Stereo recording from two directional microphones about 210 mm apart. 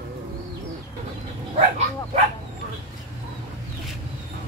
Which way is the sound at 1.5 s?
30° right (ahead or behind).